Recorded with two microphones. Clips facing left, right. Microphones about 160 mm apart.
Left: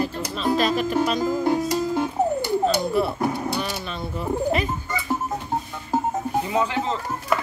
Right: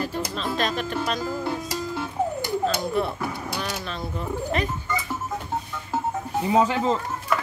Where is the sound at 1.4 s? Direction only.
40° left (ahead or behind).